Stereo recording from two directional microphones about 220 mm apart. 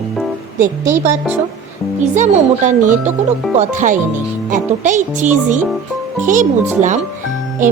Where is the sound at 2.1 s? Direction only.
35° right (ahead or behind).